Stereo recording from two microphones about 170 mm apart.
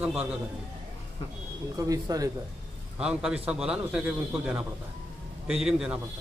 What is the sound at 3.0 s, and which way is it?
A man's voice, 5° right (ahead or behind).